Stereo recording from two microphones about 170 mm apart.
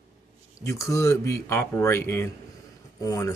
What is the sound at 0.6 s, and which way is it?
Speech, 15° left (ahead or behind).